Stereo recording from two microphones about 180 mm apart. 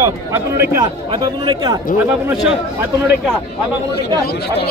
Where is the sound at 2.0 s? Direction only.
10° right (ahead or behind).